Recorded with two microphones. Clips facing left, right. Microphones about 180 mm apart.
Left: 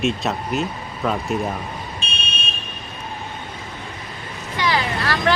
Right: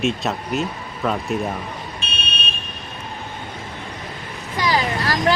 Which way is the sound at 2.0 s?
60° right (ahead or behind).